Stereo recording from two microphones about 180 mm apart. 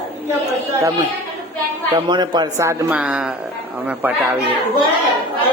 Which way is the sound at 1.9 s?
25° right (ahead or behind).